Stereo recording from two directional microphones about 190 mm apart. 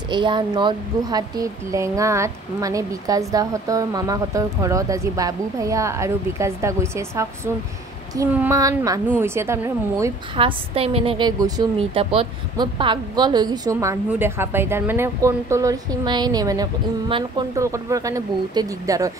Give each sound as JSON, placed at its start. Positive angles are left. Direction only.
{"t": 0.1, "sound": "speech", "side_deg": -25}
{"t": 10.3, "sound": "a woman's voice", "side_deg": -30}